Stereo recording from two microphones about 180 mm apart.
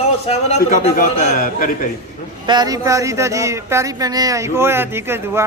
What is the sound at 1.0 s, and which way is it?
Speech, 55° left (ahead or behind).